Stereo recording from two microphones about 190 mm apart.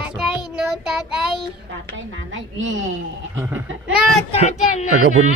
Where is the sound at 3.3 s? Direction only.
10° right (ahead or behind).